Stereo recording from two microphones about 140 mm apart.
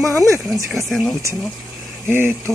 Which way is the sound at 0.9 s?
Centre (ahead or behind).